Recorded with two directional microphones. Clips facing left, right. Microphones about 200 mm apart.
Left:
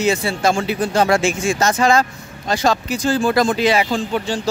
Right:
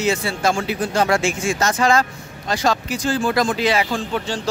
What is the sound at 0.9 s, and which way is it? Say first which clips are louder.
Speech: left 3 dB; 30° left (ahead or behind).